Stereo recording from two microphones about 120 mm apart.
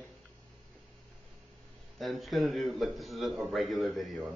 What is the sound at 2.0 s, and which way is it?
Speech, centre (ahead or behind).